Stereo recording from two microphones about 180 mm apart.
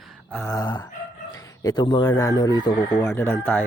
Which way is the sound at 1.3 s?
20° left (ahead or behind).